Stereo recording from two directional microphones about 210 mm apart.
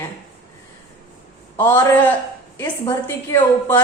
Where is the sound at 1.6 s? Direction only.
10° left (ahead or behind).